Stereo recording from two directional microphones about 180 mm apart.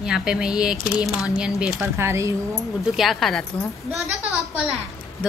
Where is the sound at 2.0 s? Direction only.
15° right (ahead or behind).